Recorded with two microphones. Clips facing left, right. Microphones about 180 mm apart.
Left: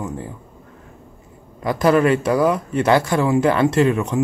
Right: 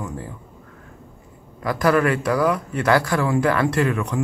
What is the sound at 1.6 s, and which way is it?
Speech, 25° left (ahead or behind).